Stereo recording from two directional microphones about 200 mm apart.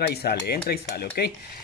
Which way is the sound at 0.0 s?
55° left (ahead or behind).